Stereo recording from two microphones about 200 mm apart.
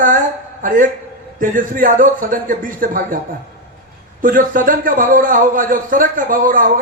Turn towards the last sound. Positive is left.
turn(degrees=-40)  # may be behind; listen again after turning